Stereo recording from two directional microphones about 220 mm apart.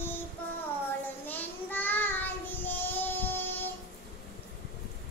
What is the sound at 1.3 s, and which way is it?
Child singing, 10° left (ahead or behind).